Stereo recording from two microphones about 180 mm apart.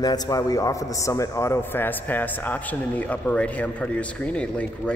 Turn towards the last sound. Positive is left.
turn(degrees=5)  # may be behind; listen again after turning